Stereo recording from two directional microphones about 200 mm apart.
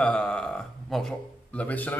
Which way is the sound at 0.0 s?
5° left (ahead or behind).